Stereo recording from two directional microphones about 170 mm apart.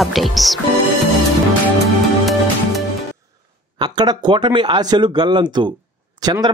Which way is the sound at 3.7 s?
25° right (ahead or behind).